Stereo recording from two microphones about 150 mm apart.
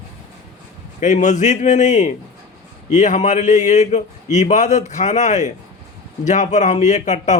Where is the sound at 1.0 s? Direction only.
55° left (ahead or behind).